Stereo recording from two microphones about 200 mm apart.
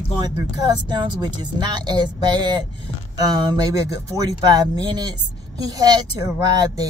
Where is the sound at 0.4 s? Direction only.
20° right (ahead or behind).